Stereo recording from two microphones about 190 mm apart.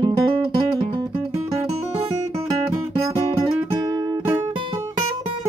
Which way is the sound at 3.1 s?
25° right (ahead or behind).